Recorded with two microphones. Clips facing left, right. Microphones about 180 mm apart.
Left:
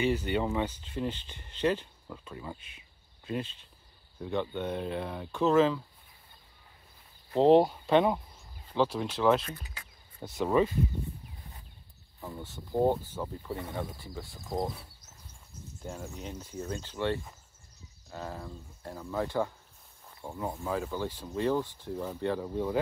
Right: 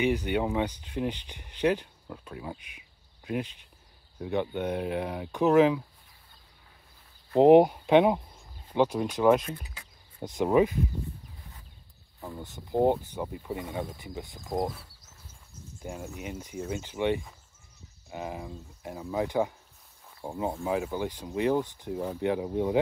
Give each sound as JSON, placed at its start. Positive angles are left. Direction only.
{"t": 0.0, "sound": "speech", "side_deg": -15}
{"t": 7.3, "sound": "speech", "side_deg": -15}
{"t": 12.2, "sound": "speech", "side_deg": -15}
{"t": 15.8, "sound": "speech", "side_deg": -5}